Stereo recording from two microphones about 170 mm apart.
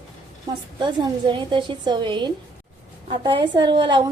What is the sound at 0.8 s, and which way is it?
A woman's voice, 30° right (ahead or behind).